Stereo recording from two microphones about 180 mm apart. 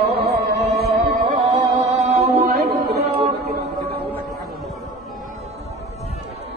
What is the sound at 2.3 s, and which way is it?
Chant, 60° right (ahead or behind).